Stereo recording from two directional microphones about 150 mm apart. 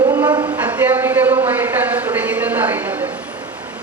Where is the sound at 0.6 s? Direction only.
10° right (ahead or behind).